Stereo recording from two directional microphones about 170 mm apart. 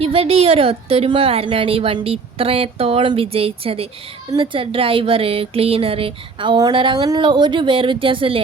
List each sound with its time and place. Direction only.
0.0 s speech: 35° right (ahead or behind)